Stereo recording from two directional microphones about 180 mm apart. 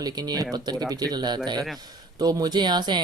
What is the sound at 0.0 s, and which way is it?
Speech, 20° right (ahead or behind).